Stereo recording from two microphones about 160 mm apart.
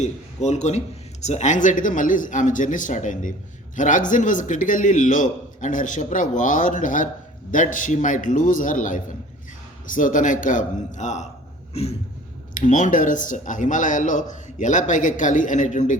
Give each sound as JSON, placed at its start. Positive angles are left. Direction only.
{"t": 0.0, "sound": "a man's voice", "side_deg": 45}
{"t": 11.7, "sound": "a sound", "side_deg": 40}
{"t": 12.5, "sound": "speech", "side_deg": 55}